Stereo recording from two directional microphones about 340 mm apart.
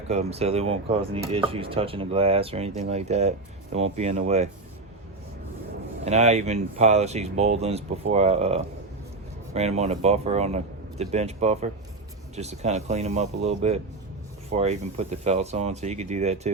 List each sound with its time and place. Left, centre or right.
0.1 s speech: centre
6.1 s speech: centre